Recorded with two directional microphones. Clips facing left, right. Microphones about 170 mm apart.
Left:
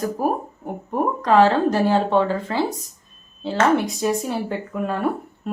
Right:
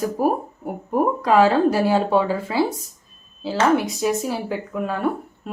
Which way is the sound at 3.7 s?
Centre (ahead or behind).